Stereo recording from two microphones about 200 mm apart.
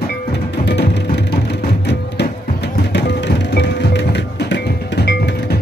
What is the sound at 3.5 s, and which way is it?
Music, 60° left (ahead or behind).